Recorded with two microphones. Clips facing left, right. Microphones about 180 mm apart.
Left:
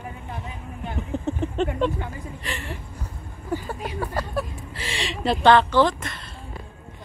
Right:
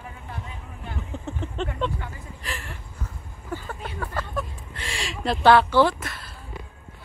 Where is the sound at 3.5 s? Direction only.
15° left (ahead or behind).